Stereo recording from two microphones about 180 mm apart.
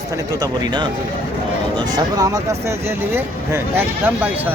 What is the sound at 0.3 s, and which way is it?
Speech, 25° right (ahead or behind).